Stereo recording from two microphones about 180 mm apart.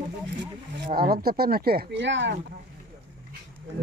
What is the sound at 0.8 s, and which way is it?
Speech, 55° right (ahead or behind).